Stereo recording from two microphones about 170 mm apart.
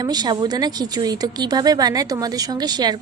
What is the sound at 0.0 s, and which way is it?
A woman's voice, 25° right (ahead or behind).